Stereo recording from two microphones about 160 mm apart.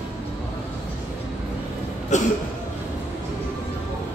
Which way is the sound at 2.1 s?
50° left (ahead or behind).